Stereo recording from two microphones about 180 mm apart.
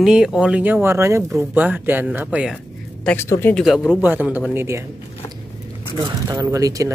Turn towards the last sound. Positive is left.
turn(degrees=-20)  # may be behind; listen again after turning